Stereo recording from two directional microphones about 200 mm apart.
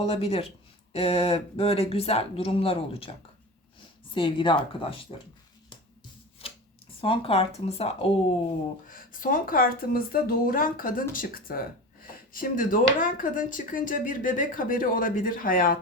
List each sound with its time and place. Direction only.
0.0 s speech: 30° left (ahead or behind)
4.1 s speech: 25° left (ahead or behind)
6.4 s chopping: 30° left (ahead or behind)
7.0 s speech: 30° left (ahead or behind)
8.9 s a woman's voice: 45° left (ahead or behind)